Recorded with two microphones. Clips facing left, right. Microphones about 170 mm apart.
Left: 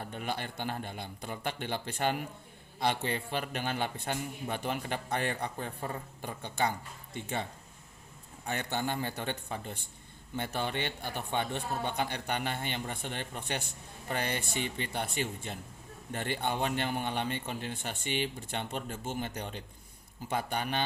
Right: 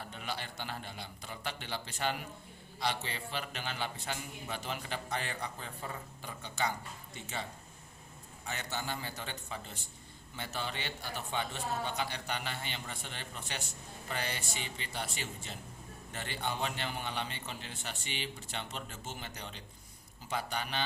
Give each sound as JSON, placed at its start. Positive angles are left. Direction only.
{"t": 0.0, "sound": "a man's voice", "side_deg": 50}
{"t": 8.4, "sound": "a man's voice", "side_deg": 55}